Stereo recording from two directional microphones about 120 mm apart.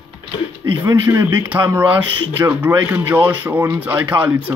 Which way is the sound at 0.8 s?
30° right (ahead or behind).